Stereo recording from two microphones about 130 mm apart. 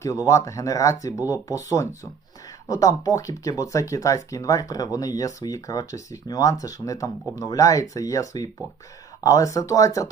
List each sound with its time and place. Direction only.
0.3 s speech: 25° left (ahead or behind)